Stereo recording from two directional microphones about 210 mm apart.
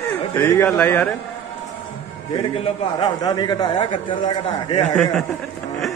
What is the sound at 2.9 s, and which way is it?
A man's voice, 20° left (ahead or behind).